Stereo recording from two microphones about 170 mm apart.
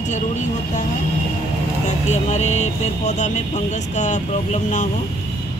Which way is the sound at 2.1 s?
40° left (ahead or behind).